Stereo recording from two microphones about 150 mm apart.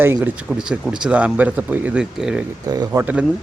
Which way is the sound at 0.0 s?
15° right (ahead or behind).